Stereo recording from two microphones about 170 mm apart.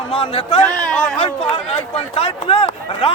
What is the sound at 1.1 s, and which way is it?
Speech, 35° left (ahead or behind).